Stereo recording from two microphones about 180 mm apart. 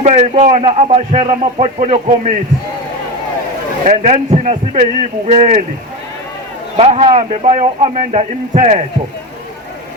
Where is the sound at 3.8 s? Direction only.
40° right (ahead or behind).